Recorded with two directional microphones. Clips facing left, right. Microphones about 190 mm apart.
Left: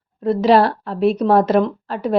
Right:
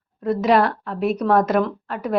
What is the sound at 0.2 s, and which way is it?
A woman's voice, 30° left (ahead or behind).